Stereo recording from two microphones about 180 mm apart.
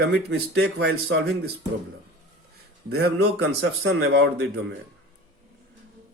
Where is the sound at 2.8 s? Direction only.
65° right (ahead or behind).